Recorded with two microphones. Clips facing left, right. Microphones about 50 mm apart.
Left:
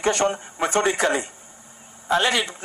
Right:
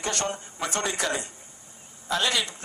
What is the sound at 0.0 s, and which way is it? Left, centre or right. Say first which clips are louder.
A woman's voice: left 8 dB; left.